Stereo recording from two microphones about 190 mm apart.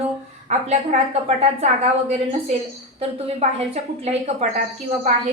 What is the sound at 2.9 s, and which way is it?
Speech, 35° right (ahead or behind).